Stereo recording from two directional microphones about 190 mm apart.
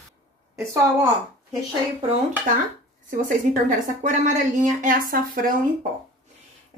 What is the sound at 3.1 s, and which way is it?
Speech, 45° right (ahead or behind).